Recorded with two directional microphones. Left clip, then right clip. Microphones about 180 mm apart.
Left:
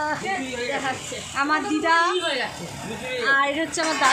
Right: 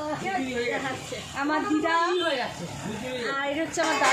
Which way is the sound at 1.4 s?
10° right (ahead or behind).